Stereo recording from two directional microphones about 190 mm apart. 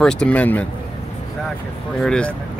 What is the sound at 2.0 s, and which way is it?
Speech, 5° left (ahead or behind).